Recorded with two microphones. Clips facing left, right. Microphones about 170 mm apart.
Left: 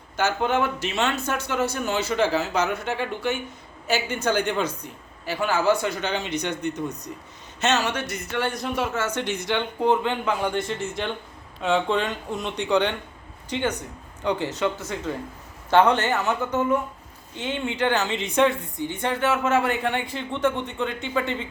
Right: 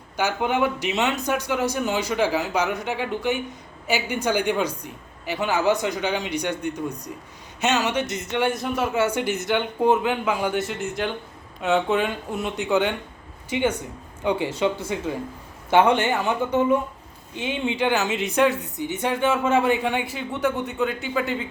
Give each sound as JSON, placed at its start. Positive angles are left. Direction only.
{"t": 0.2, "sound": "a man's voice", "side_deg": -15}
{"t": 8.4, "sound": "a man's voice", "side_deg": 0}